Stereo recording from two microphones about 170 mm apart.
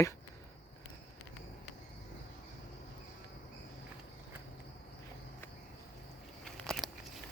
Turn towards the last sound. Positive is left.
turn(degrees=0)  # may be behind; listen again after turning